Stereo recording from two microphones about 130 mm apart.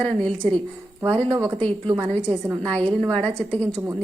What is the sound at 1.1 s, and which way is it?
Speech, 50° right (ahead or behind).